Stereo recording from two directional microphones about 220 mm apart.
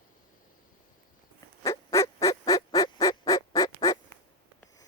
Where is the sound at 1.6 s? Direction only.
15° left (ahead or behind).